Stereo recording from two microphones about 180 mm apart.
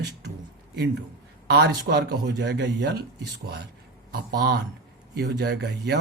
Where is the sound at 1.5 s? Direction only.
65° right (ahead or behind).